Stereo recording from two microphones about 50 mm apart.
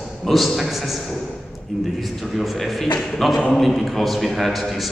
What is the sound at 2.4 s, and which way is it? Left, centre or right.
A man's voice, centre.